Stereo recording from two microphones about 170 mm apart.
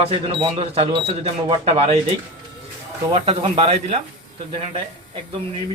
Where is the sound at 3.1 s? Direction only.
35° right (ahead or behind).